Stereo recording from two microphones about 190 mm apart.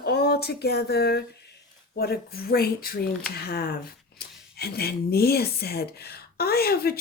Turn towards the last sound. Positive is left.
turn(degrees=55)  # may be behind; listen again after turning